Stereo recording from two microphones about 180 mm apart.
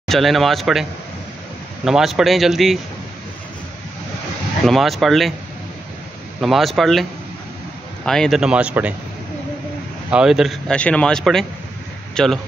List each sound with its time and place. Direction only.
0.1 s speech: centre (ahead or behind)
1.9 s speech: centre (ahead or behind)
4.6 s speech: centre (ahead or behind)
6.4 s speech: centre (ahead or behind)
10.1 s speech: 5° right (ahead or behind)